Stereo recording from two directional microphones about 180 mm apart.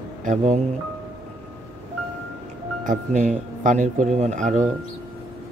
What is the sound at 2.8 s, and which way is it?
Speech, 45° right (ahead or behind).